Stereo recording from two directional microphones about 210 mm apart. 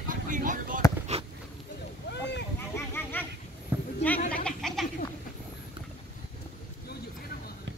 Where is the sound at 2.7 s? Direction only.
10° left (ahead or behind).